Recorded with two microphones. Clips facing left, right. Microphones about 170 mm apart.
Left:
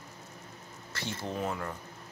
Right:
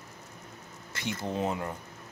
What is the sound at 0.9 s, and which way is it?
Speech, 20° right (ahead or behind).